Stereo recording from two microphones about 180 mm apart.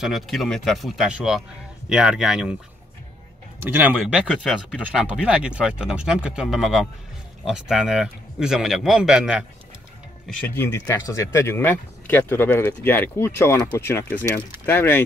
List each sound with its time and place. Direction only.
0.0 s speech: centre (ahead or behind)
3.5 s speech: 10° right (ahead or behind)
10.2 s speech: 10° left (ahead or behind)